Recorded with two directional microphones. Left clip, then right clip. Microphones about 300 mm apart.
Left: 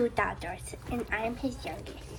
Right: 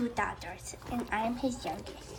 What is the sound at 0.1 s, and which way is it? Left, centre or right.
A woman's voice, centre.